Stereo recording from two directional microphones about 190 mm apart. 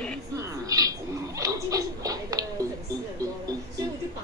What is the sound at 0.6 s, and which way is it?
Owl, 20° right (ahead or behind).